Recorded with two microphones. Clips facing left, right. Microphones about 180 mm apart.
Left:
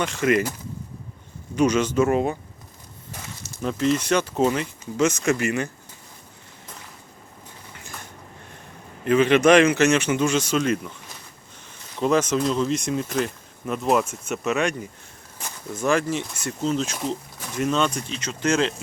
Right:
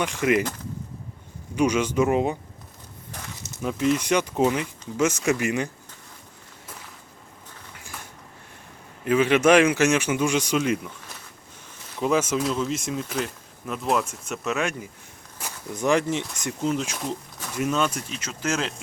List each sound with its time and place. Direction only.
0.0 s speech: 15° right (ahead or behind)
1.5 s speech: 10° right (ahead or behind)
3.6 s speech: 10° right (ahead or behind)
9.0 s speech: 10° right (ahead or behind)
11.9 s speech: 10° right (ahead or behind)